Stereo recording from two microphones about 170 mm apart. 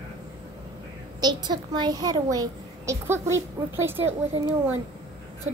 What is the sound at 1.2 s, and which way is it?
A child's voice, 25° right (ahead or behind).